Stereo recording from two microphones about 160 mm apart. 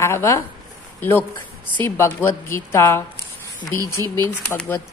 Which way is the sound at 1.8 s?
15° left (ahead or behind).